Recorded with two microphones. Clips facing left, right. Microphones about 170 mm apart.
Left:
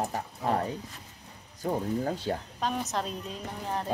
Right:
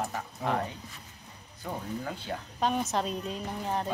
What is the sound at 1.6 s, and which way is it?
Speech, 35° left (ahead or behind).